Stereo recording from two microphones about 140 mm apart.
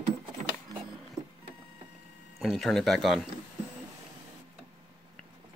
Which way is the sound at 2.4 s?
Centre (ahead or behind).